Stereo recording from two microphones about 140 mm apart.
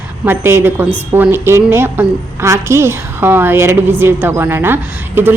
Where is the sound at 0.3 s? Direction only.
15° right (ahead or behind).